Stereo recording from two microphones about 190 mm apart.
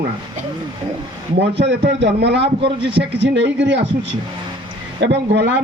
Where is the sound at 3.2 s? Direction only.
70° right (ahead or behind).